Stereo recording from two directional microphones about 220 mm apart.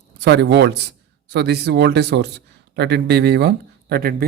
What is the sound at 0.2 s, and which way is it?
A man's voice, 50° right (ahead or behind).